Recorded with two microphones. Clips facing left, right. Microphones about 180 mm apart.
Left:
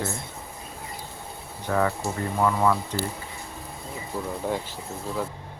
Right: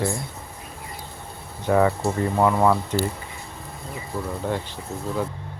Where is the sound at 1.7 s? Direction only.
20° right (ahead or behind).